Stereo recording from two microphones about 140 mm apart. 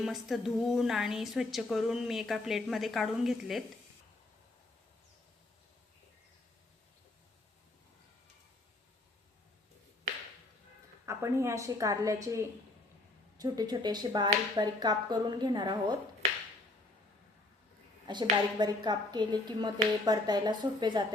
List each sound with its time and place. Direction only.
0.0 s a woman's voice: centre (ahead or behind)
11.0 s a woman's voice: 20° right (ahead or behind)
18.0 s a woman's voice: 30° right (ahead or behind)